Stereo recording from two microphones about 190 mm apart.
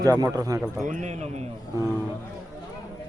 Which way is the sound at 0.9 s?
40° right (ahead or behind).